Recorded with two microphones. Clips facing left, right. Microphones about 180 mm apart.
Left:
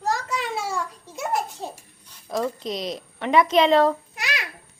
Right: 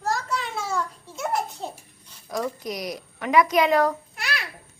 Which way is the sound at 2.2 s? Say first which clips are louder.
Left 2 dB; 25° left (ahead or behind).